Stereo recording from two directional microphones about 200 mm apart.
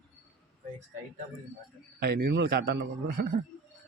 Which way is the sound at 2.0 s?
50° right (ahead or behind).